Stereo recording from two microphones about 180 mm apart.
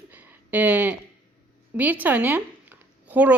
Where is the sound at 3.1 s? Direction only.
10° right (ahead or behind).